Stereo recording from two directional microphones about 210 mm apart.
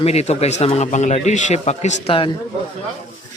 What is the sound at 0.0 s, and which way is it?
A man's voice, 30° left (ahead or behind).